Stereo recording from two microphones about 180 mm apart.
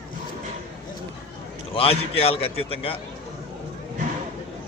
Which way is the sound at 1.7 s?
30° left (ahead or behind).